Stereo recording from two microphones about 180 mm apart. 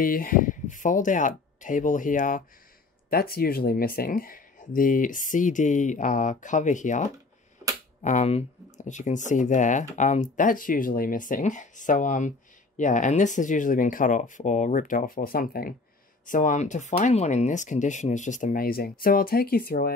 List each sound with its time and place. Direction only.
0.0 s speech: 50° left (ahead or behind)